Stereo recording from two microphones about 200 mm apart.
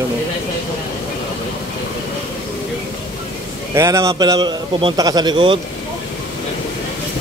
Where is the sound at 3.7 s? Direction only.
15° right (ahead or behind).